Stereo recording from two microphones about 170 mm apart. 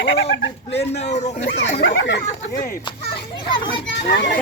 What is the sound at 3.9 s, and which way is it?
Speech, 70° left (ahead or behind).